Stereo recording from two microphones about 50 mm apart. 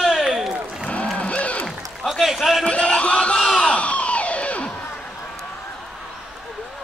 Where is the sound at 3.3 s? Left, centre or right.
Centre.